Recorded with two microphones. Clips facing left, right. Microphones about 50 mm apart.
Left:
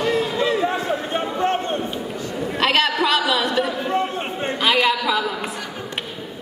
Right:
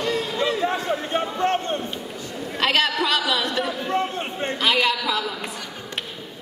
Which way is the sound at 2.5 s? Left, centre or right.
Centre.